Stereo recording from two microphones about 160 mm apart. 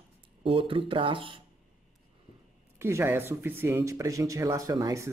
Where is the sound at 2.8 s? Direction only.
15° right (ahead or behind).